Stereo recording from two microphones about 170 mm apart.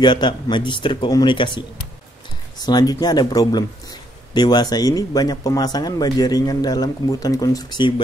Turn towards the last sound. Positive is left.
turn(degrees=25)  # may be behind; listen again after turning